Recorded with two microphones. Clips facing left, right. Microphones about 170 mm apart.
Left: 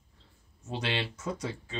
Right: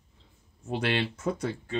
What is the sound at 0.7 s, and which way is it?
Speech, 55° right (ahead or behind).